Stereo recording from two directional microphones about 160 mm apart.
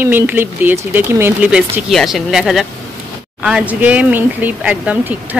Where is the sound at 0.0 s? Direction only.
15° right (ahead or behind).